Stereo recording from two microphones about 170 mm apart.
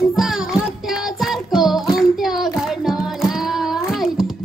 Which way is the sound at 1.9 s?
Centre (ahead or behind).